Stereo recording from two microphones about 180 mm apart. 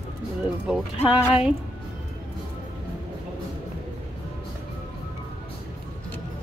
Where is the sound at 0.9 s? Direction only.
30° left (ahead or behind).